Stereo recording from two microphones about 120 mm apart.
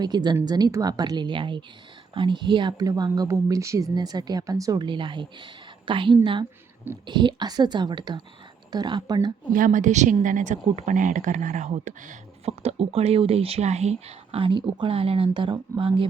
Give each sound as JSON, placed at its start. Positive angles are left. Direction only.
{"t": 0.0, "sound": "a woman's voice", "side_deg": -35}
{"t": 9.6, "sound": "a woman's voice", "side_deg": -90}
{"t": 14.3, "sound": "speech", "side_deg": -45}